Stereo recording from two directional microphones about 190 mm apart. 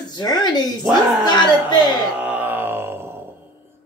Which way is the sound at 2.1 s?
10° right (ahead or behind).